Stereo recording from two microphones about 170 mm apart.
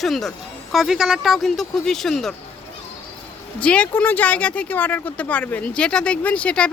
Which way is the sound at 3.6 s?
5° left (ahead or behind).